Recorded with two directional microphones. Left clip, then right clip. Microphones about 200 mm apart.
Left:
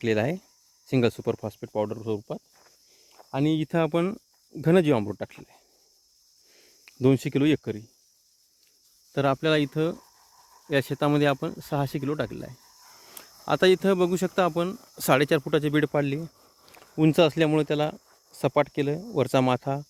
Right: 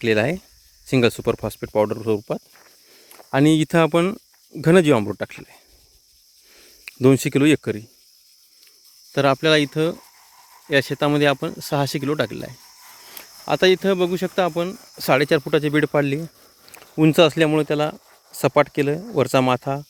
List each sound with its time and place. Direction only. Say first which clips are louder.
0.0 s speech: right 6 dB; 5° right (ahead or behind)
6.6 s speech: right 6 dB; 10° right (ahead or behind)
9.1 s speech: right 7 dB; 5° right (ahead or behind)
10.0 s scratch: right 7 dB; 20° right (ahead or behind)
10.7 s speech: right 5 dB; centre (ahead or behind)
13.0 s speech: right 7 dB; centre (ahead or behind)